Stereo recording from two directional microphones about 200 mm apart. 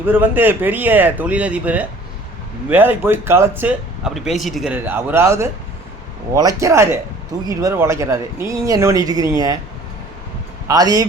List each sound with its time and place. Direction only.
0.0 s speech: 10° right (ahead or behind)
6.6 s speech: 15° right (ahead or behind)
10.7 s speech: 20° right (ahead or behind)